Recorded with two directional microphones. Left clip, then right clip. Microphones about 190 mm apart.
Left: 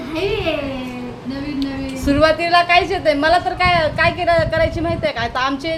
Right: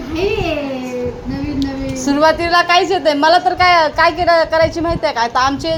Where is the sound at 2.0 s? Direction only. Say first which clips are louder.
Right 2 dB; 10° right (ahead or behind).